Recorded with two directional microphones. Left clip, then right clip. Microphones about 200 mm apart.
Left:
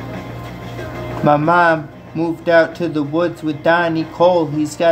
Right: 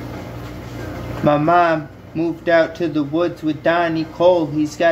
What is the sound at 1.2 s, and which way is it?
Speech, 20° left (ahead or behind).